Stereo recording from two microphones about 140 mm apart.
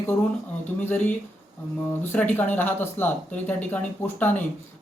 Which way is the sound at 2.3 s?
15° left (ahead or behind).